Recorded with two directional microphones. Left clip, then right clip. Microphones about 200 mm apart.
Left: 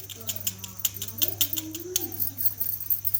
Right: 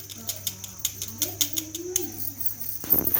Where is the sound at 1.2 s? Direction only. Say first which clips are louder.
Right 1 dB; 25° left (ahead or behind).